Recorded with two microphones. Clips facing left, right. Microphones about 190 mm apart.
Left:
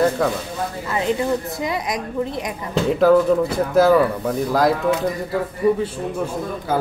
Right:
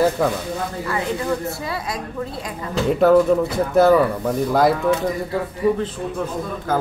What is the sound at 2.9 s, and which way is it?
Speech, centre (ahead or behind).